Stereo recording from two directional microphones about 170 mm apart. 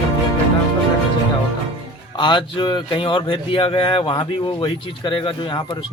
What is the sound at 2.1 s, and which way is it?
Speech, 25° left (ahead or behind).